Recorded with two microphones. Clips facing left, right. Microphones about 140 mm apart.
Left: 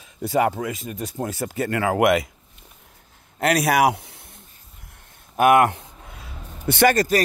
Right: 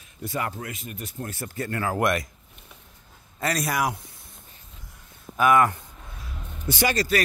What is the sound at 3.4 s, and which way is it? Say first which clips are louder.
Speech: left 8 dB; 70° left (ahead or behind).